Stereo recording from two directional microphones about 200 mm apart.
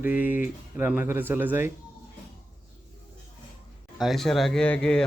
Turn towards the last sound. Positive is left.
turn(degrees=5)  # may be behind; listen again after turning